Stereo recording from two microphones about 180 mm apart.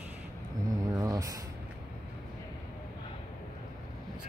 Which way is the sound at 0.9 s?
20° right (ahead or behind).